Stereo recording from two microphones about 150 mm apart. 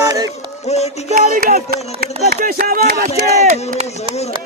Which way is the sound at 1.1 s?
75° right (ahead or behind).